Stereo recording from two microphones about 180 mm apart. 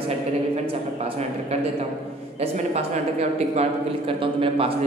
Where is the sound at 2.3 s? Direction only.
35° right (ahead or behind).